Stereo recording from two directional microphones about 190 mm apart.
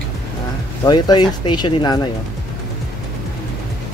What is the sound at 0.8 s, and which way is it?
Speech, 20° left (ahead or behind).